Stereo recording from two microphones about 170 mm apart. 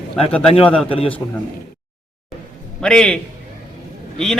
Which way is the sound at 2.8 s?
5° left (ahead or behind).